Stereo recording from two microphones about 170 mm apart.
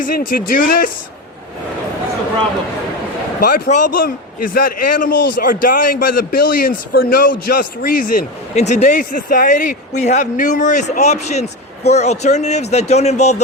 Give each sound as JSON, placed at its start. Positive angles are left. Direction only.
{"t": 0.0, "sound": "a man's voice", "side_deg": 60}
{"t": 3.4, "sound": "a man's voice", "side_deg": 55}